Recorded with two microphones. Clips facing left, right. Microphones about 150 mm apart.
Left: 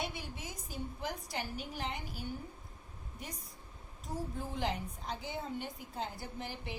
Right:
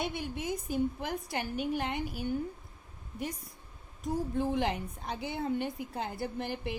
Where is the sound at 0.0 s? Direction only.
55° right (ahead or behind).